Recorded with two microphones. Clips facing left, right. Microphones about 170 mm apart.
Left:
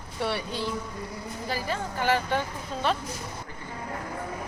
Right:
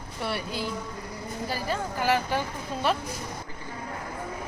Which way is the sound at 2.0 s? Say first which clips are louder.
Even; 5° right (ahead or behind).